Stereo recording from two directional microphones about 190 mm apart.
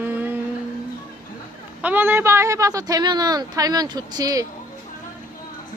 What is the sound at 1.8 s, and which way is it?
A man's voice, 10° right (ahead or behind).